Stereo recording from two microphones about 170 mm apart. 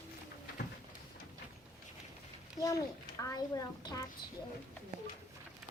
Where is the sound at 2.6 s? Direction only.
20° left (ahead or behind).